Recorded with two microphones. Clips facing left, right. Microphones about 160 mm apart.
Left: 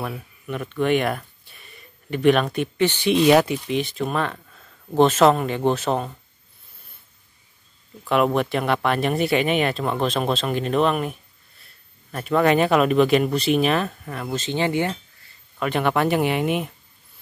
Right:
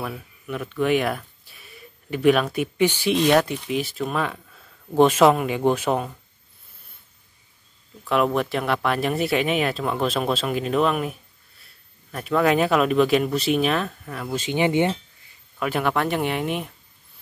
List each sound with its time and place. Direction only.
0.0 s speech: centre (ahead or behind)
3.6 s speech: 5° right (ahead or behind)
8.0 s speech: centre (ahead or behind)
14.3 s speech: 10° right (ahead or behind)
15.6 s speech: centre (ahead or behind)